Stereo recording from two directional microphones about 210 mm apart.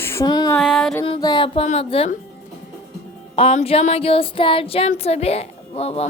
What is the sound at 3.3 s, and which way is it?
Child singing, 30° left (ahead or behind).